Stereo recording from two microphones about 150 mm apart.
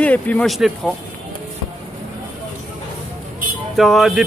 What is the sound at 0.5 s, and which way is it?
Speech, centre (ahead or behind).